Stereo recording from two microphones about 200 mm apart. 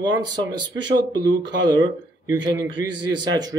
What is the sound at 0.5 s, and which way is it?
Speech, 20° right (ahead or behind).